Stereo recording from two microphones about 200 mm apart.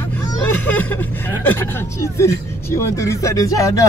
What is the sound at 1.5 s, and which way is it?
Speech, 15° left (ahead or behind).